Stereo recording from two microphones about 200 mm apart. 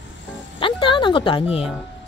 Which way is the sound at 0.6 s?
25° left (ahead or behind).